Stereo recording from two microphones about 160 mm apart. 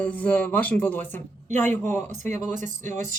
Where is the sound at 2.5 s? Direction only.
50° right (ahead or behind).